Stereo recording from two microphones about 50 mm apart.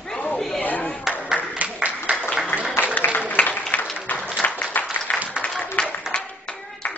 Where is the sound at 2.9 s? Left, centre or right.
Left.